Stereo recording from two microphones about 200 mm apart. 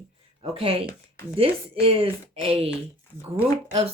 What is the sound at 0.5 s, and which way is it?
Speech, 30° right (ahead or behind).